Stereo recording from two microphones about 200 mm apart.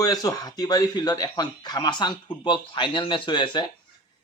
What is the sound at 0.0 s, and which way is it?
Speech, 20° left (ahead or behind).